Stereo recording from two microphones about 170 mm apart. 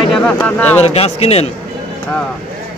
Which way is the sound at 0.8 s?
35° left (ahead or behind).